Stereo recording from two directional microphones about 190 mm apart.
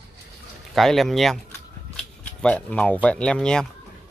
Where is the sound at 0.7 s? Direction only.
Centre (ahead or behind).